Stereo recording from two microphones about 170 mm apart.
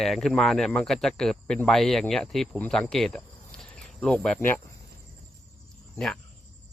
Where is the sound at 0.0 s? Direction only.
Centre (ahead or behind).